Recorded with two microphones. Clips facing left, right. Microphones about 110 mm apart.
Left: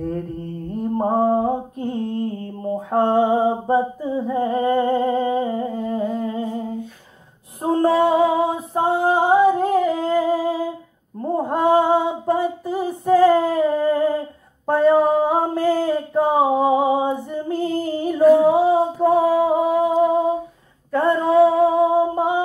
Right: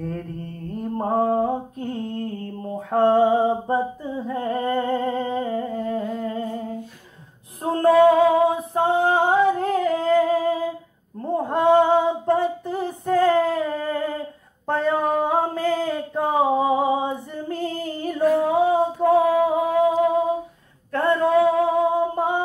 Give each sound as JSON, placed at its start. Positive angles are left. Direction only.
{"t": 0.7, "sound": "mantra", "side_deg": 10}
{"t": 3.7, "sound": "humming", "side_deg": 10}
{"t": 7.8, "sound": "female singing", "side_deg": 20}
{"t": 9.0, "sound": "humming", "side_deg": 15}
{"t": 11.1, "sound": "female singing", "side_deg": 5}
{"t": 14.7, "sound": "a sound", "side_deg": 10}
{"t": 17.0, "sound": "music", "side_deg": 5}
{"t": 20.9, "sound": "a sound", "side_deg": 5}